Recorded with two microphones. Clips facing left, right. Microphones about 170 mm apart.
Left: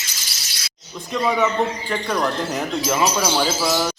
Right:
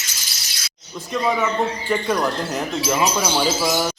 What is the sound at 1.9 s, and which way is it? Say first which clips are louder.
Speech: right 2 dB; 5° right (ahead or behind).